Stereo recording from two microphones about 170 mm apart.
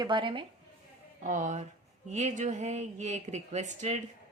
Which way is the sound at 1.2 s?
45° right (ahead or behind).